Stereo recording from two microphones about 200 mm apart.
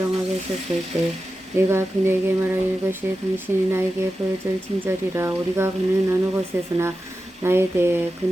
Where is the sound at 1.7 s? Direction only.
10° right (ahead or behind).